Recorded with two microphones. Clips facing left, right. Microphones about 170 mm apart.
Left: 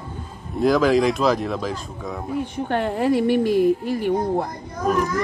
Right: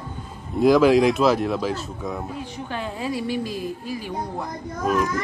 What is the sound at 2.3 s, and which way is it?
A woman's voice, 60° left (ahead or behind).